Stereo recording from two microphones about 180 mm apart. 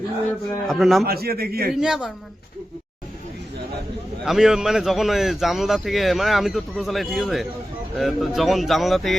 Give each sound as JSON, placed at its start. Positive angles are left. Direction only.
{"t": 0.7, "sound": "speech", "side_deg": 0}
{"t": 1.0, "sound": "a man's voice", "side_deg": -60}
{"t": 1.7, "sound": "speech", "side_deg": -5}
{"t": 4.3, "sound": "speech", "side_deg": 0}